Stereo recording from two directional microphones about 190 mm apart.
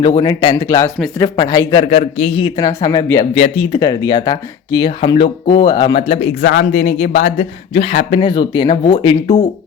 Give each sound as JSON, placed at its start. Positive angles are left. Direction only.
{"t": 0.2, "sound": "a man's voice", "side_deg": 20}
{"t": 1.9, "sound": "speech", "side_deg": 30}
{"t": 3.3, "sound": "speech", "side_deg": 35}
{"t": 3.8, "sound": "speech", "side_deg": 20}
{"t": 6.4, "sound": "speech", "side_deg": 65}
{"t": 6.8, "sound": "speech", "side_deg": 40}
{"t": 8.2, "sound": "speech", "side_deg": 25}